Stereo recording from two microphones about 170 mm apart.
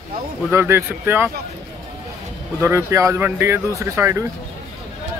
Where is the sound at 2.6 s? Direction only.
15° right (ahead or behind).